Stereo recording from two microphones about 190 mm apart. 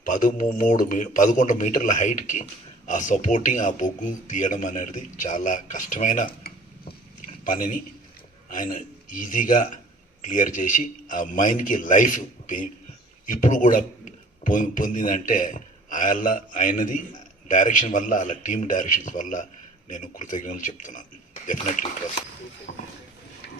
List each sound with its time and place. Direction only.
0.0 s a man's voice: 45° left (ahead or behind)
22.7 s speech: 60° left (ahead or behind)